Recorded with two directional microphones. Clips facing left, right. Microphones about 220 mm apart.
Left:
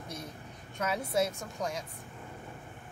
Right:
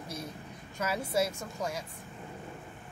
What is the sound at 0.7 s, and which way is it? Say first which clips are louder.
Speech: even; centre (ahead or behind).